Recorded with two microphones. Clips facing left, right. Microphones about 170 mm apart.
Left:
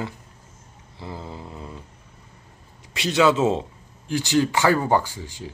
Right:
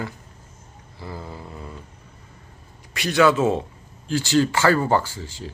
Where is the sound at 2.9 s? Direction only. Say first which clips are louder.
Right 1 dB; 20° left (ahead or behind).